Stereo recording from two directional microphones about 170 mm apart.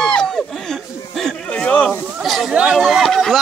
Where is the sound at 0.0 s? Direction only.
5° left (ahead or behind).